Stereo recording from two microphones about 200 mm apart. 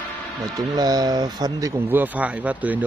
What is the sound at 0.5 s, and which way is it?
Speech, 20° right (ahead or behind).